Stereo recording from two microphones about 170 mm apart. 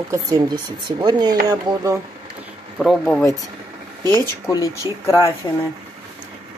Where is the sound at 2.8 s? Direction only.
Centre (ahead or behind).